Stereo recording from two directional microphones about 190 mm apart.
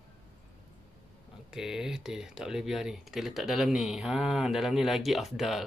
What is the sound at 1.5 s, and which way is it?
Speech, 5° right (ahead or behind).